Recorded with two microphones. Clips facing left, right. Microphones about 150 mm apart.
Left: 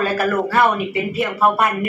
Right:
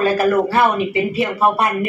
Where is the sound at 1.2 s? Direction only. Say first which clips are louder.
Left 1 dB; 20° right (ahead or behind).